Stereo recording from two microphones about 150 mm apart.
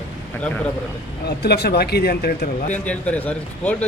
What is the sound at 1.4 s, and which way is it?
Speech, 90° left.